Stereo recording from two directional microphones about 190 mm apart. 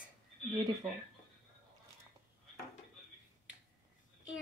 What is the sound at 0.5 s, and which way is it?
Speech, 20° right (ahead or behind).